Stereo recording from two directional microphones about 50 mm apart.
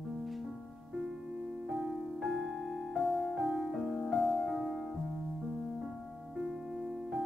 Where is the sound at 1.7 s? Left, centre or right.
Centre.